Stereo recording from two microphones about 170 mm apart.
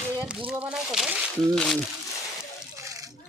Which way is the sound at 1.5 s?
5° left (ahead or behind).